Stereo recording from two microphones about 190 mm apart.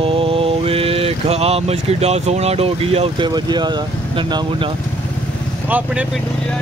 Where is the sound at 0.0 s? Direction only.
30° right (ahead or behind).